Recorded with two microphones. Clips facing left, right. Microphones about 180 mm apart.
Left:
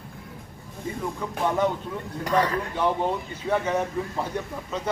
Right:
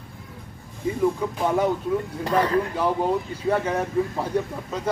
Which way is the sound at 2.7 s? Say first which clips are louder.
Right 2 dB; 5° right (ahead or behind).